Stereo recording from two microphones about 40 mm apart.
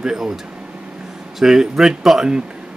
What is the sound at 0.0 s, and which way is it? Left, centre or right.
Speech, centre.